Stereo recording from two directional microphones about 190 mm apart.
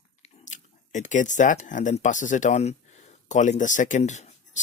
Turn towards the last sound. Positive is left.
turn(degrees=40)  # may be behind; listen again after turning